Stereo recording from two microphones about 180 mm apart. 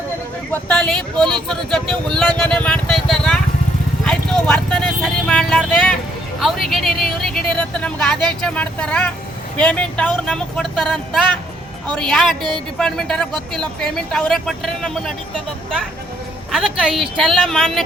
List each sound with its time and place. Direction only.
0.5 s speech: 5° left (ahead or behind)
12.4 s speech: 25° right (ahead or behind)
12.8 s speech: 5° left (ahead or behind)
16.5 s speech: centre (ahead or behind)